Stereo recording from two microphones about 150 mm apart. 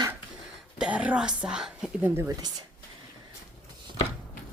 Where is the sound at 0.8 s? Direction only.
10° right (ahead or behind).